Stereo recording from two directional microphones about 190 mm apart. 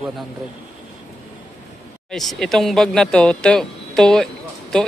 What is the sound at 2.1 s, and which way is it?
Speech, centre (ahead or behind).